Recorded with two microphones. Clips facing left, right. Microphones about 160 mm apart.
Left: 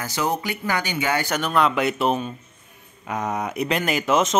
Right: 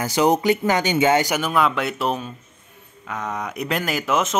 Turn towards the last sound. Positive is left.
turn(degrees=0)  # may be behind; listen again after turning